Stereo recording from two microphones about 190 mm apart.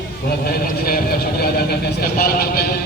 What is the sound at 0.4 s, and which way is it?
A man's voice, 50° left (ahead or behind).